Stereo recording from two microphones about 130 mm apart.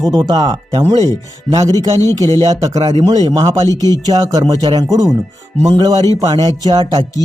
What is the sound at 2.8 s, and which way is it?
Speech, 50° right (ahead or behind).